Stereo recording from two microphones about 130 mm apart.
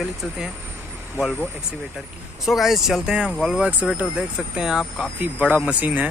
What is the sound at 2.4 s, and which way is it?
Speech, centre (ahead or behind).